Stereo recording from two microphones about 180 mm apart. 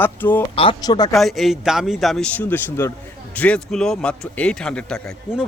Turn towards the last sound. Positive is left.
turn(degrees=0)  # may be behind; listen again after turning